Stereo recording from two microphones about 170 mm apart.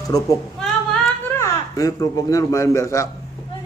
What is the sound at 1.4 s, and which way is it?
A man's voice, 20° left (ahead or behind).